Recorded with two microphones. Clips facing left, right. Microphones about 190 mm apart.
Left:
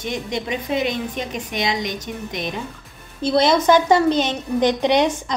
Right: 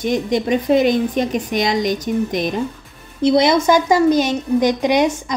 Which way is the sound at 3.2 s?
15° right (ahead or behind).